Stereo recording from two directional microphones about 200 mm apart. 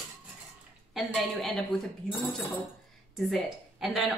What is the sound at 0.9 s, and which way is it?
Speech, centre (ahead or behind).